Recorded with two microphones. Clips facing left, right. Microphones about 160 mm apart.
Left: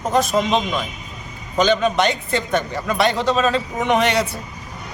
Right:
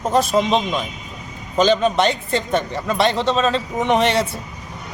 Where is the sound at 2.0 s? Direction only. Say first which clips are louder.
Right 1 dB; 30° right (ahead or behind).